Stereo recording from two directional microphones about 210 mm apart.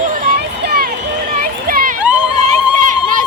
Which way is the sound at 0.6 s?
45° right (ahead or behind).